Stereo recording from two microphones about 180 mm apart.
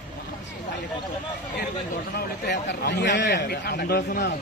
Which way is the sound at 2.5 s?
70° left (ahead or behind).